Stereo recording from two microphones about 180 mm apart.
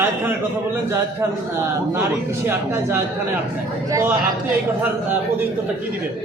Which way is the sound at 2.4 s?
15° right (ahead or behind).